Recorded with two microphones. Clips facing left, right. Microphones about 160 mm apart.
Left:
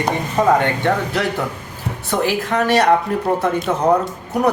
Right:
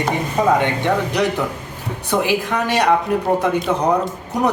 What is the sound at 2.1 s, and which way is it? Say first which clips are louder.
Speech: even; 15° right (ahead or behind).